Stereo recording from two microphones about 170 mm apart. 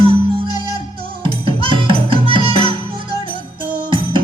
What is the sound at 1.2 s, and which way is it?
Music, 30° right (ahead or behind).